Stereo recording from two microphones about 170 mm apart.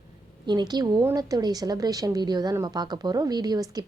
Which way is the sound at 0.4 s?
25° right (ahead or behind).